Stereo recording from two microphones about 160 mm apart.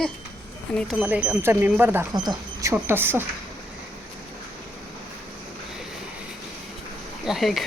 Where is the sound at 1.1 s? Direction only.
10° right (ahead or behind).